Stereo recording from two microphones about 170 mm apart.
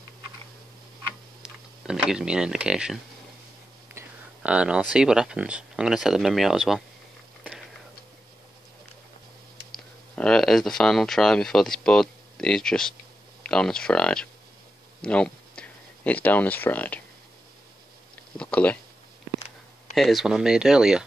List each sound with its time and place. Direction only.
1.4 s speech: 5° right (ahead or behind)
4.0 s a sound: 15° right (ahead or behind)
4.4 s speech: 5° right (ahead or behind)
10.1 s speech: 5° left (ahead or behind)
18.4 s speech: 10° left (ahead or behind)
19.9 s speech: centre (ahead or behind)